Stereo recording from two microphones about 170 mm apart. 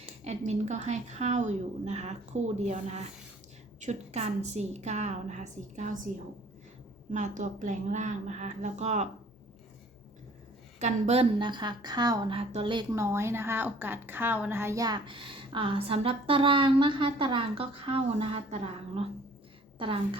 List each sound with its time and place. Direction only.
0.3 s a woman's voice: 40° right (ahead or behind)
7.1 s a woman's voice: 45° right (ahead or behind)
10.8 s a woman's voice: 45° right (ahead or behind)
12.9 s a woman's voice: 15° right (ahead or behind)